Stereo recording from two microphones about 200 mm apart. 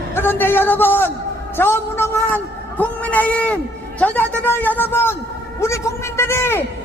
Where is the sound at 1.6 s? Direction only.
10° left (ahead or behind).